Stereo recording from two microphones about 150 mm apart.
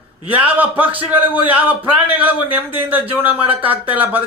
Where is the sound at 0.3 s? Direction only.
10° right (ahead or behind).